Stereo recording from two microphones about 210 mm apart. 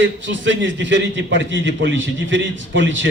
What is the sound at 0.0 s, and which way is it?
A man's voice, 60° right (ahead or behind).